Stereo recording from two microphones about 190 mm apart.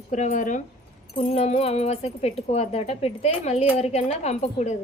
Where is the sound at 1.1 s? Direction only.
30° left (ahead or behind).